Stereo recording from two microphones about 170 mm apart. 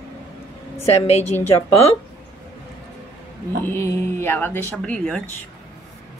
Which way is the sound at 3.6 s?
15° left (ahead or behind).